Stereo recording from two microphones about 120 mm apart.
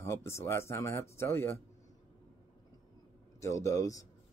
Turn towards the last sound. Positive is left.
turn(degrees=30)  # may be behind; listen again after turning